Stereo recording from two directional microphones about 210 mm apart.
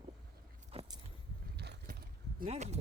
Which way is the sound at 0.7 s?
25° right (ahead or behind).